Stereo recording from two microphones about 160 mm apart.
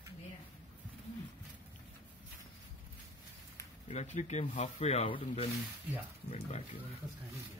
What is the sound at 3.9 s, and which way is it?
Speech, 45° left (ahead or behind).